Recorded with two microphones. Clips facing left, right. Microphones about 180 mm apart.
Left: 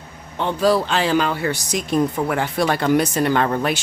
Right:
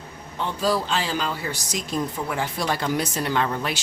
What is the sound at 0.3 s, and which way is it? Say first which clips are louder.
Speech: left 6 dB; 65° left (ahead or behind).